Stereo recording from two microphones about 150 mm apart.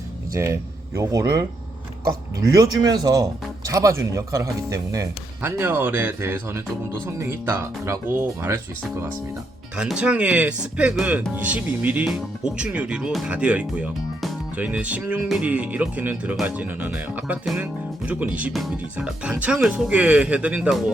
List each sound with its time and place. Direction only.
0.3 s speech: 20° right (ahead or behind); by 20.9 s 5° right (ahead or behind)